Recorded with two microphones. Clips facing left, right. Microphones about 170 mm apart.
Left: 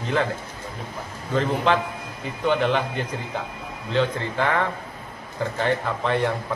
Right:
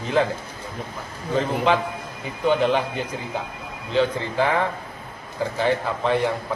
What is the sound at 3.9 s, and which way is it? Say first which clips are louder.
A man's voice: right 2 dB; 10° right (ahead or behind).